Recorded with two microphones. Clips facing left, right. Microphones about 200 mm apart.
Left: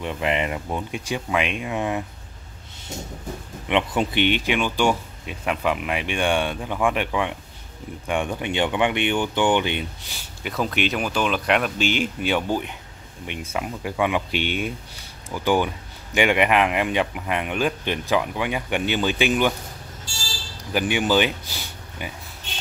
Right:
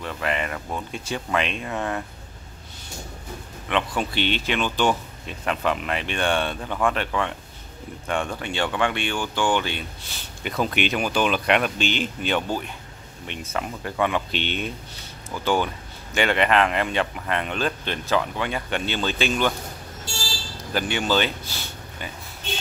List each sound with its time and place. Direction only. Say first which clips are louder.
0.0 s speech: left 3 dB; 20° left (ahead or behind)
3.6 s speech: left 3 dB; 20° left (ahead or behind)
10.4 s speech: even; centre (ahead or behind)
20.7 s speech: left 3 dB; 15° left (ahead or behind)